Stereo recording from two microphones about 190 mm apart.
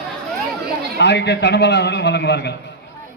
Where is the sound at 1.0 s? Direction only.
65° left (ahead or behind).